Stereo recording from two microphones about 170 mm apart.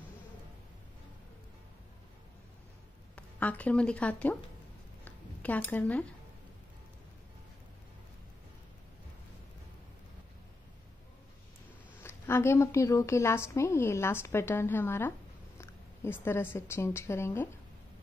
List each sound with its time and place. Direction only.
3.2 s speech: 10° left (ahead or behind)
5.0 s a sound: 10° left (ahead or behind)
12.0 s a woman's voice: 15° left (ahead or behind)